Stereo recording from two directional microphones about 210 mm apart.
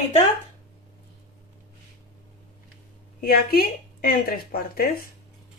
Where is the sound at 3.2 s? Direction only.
45° left (ahead or behind).